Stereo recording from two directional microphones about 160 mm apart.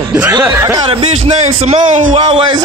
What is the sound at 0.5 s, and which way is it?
Speech, 20° right (ahead or behind).